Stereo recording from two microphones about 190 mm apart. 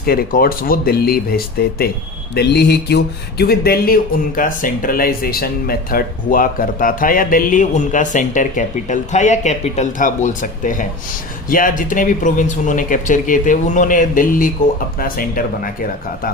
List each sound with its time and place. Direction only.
0.0 s speech: 50° left (ahead or behind)